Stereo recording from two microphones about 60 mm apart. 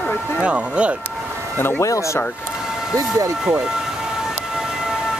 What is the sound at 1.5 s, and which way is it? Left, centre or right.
Speech, left.